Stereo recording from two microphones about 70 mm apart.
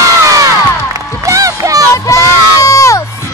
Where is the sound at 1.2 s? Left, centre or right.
Right.